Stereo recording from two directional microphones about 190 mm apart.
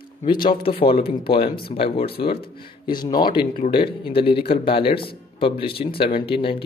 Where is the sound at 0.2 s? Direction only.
25° left (ahead or behind).